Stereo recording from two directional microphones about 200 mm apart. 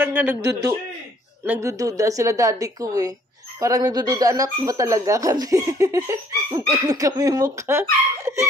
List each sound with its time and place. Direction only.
0.0 s a woman's voice: 10° right (ahead or behind)